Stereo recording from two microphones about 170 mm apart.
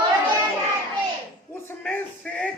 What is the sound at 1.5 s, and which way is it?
Speech, 10° left (ahead or behind).